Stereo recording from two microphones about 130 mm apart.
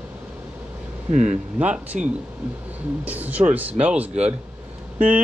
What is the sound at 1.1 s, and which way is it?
Speech, 60° right (ahead or behind).